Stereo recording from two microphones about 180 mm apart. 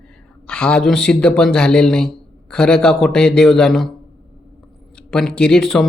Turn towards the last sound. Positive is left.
turn(degrees=0)  # may be behind; listen again after turning